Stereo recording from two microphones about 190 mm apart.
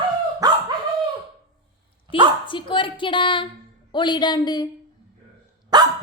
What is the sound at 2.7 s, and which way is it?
A woman's voice, 25° left (ahead or behind).